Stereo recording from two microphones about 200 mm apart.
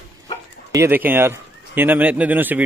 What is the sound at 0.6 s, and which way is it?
Speech, 15° right (ahead or behind).